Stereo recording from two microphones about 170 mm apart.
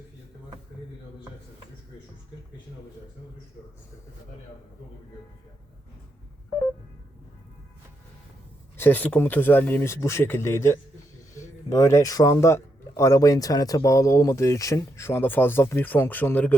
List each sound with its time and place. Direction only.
8.8 s speech: 10° left (ahead or behind)